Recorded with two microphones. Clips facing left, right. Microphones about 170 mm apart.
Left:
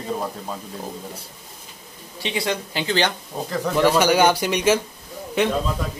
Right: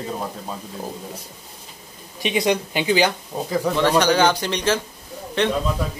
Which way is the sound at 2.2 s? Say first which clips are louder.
Right 5 dB; 20° right (ahead or behind).